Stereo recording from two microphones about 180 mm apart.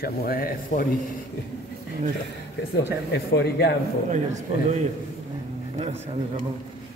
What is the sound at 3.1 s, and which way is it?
Speech, 65° left (ahead or behind).